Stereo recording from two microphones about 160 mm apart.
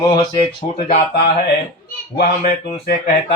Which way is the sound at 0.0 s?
30° left (ahead or behind).